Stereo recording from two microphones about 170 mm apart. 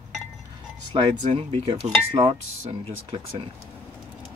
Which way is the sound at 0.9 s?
30° right (ahead or behind).